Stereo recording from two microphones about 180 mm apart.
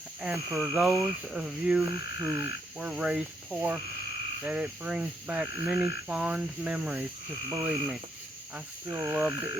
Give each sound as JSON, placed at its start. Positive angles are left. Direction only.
{"t": 0.3, "sound": "frog", "side_deg": -15}
{"t": 0.8, "sound": "frog", "side_deg": 0}